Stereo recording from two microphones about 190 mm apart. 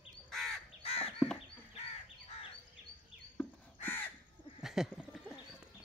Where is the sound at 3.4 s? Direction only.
10° left (ahead or behind).